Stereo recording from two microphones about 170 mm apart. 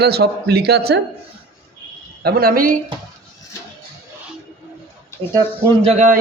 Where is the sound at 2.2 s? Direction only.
60° right (ahead or behind).